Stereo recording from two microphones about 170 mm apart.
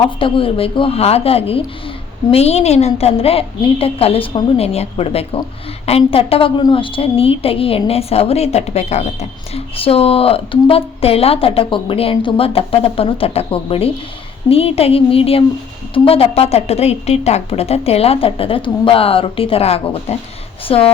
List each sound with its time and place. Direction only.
0.2 s a woman's voice: 30° left (ahead or behind)